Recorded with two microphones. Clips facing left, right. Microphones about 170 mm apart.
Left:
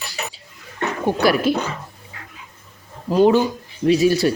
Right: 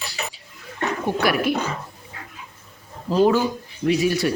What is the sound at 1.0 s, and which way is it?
Speech, 30° left (ahead or behind).